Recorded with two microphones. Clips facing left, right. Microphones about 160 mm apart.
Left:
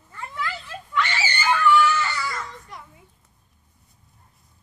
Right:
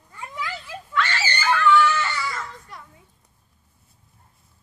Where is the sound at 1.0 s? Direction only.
15° left (ahead or behind).